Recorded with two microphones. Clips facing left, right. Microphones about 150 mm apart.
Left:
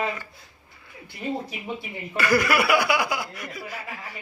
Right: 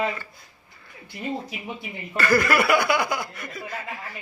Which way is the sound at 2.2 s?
10° left (ahead or behind).